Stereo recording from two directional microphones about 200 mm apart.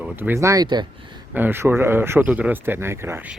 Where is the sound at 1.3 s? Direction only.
10° right (ahead or behind).